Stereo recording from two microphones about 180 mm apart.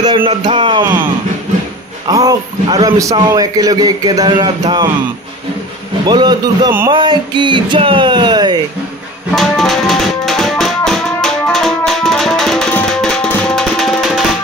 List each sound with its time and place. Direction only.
0.0 s a sound: 25° right (ahead or behind)
0.4 s a man's voice: 30° right (ahead or behind)
0.8 s a man's voice: 10° right (ahead or behind)
6.0 s a man's voice: 25° right (ahead or behind)
9.3 s music: centre (ahead or behind)